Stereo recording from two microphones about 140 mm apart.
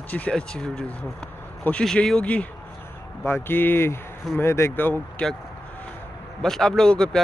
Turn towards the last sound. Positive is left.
turn(degrees=5)  # may be behind; listen again after turning